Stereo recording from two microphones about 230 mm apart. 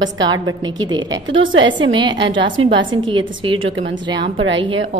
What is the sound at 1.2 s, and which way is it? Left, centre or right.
Speech, right.